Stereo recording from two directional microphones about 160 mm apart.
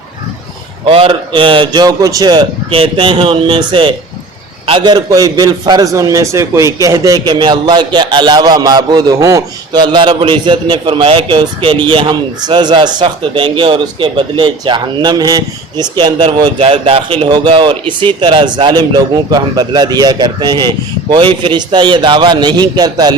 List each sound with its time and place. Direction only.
0.9 s a man's voice: 35° right (ahead or behind)